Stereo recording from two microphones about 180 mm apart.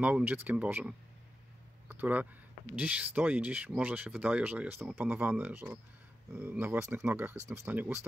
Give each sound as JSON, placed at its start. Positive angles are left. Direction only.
{"t": 0.0, "sound": "speech", "side_deg": -10}
{"t": 1.9, "sound": "a sound", "side_deg": -10}
{"t": 2.7, "sound": "speech", "side_deg": -10}